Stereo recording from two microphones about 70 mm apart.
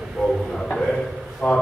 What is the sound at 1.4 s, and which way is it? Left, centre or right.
Speech, left.